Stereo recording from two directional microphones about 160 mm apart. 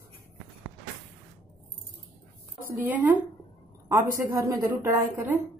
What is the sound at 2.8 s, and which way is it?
Speech, 10° right (ahead or behind).